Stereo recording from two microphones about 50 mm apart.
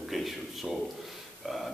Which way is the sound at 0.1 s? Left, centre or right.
Centre.